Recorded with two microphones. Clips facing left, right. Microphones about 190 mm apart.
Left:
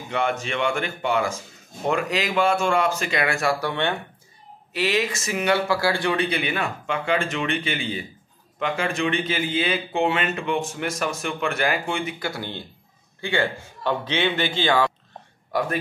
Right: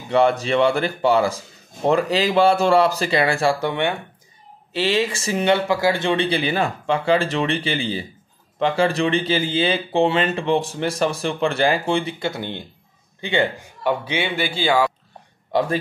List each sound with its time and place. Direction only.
0.1 s speech: 35° right (ahead or behind)
4.7 s a man's voice: 30° right (ahead or behind); by 14.9 s 10° right (ahead or behind)
15.5 s a man's voice: 25° right (ahead or behind)